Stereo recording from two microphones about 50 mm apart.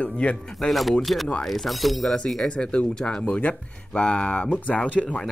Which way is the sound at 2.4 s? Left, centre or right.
Centre.